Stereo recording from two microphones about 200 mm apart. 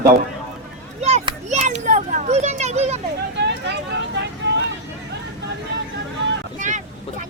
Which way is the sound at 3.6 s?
60° right (ahead or behind).